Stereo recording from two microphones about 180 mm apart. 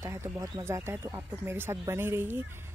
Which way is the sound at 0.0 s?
15° right (ahead or behind).